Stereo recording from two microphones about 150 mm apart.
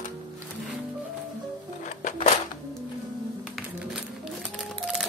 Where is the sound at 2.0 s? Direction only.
55° left (ahead or behind).